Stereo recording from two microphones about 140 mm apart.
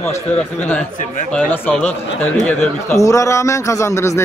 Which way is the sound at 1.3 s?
10° left (ahead or behind).